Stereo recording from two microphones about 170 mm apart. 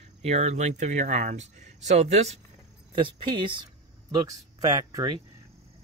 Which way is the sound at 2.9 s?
30° right (ahead or behind).